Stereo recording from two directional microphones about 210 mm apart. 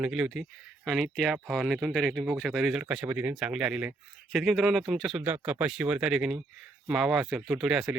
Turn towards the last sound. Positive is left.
turn(degrees=-5)  # may be behind; listen again after turning